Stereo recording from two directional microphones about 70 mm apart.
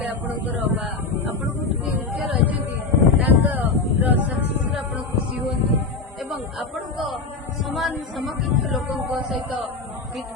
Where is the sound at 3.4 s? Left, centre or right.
Right.